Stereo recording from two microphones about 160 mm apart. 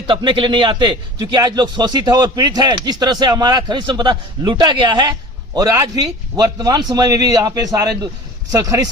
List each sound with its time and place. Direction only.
0.1 s a man's voice: 30° right (ahead or behind)